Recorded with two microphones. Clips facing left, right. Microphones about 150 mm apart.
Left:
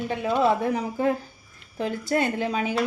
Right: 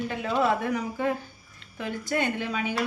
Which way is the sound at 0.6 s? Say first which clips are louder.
Left 3 dB; 35° left (ahead or behind).